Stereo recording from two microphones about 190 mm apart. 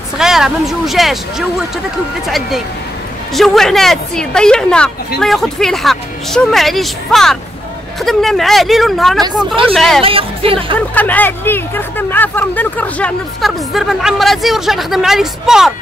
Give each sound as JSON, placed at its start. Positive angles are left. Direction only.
{"t": 0.2, "sound": "speech", "side_deg": 0}
{"t": 10.0, "sound": "speech", "side_deg": -30}
{"t": 11.0, "sound": "speech", "side_deg": 10}